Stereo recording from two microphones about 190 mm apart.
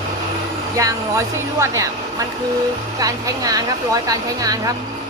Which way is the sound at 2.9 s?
20° right (ahead or behind).